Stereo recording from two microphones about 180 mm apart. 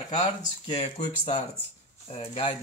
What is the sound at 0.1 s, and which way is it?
Speech, 30° left (ahead or behind).